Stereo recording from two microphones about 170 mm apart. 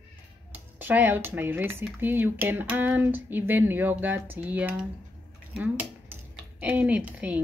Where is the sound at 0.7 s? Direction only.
10° right (ahead or behind).